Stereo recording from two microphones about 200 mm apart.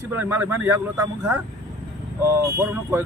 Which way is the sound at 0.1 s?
10° right (ahead or behind).